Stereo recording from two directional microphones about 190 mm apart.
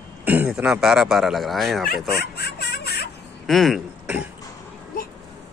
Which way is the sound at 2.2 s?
60° left (ahead or behind).